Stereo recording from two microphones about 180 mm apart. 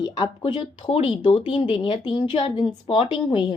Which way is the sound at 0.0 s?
25° left (ahead or behind).